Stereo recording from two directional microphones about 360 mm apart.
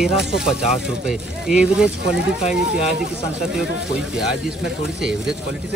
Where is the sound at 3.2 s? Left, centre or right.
Centre.